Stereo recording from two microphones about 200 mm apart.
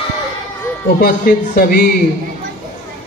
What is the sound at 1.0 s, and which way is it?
Speech, 45° left (ahead or behind).